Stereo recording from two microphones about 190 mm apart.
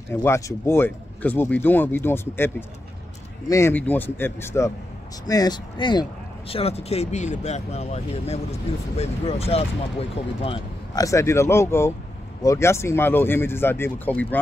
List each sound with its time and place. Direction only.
0.1 s speech: 15° left (ahead or behind); by 11.1 s 30° left (ahead or behind)
11.1 s speech: 15° left (ahead or behind)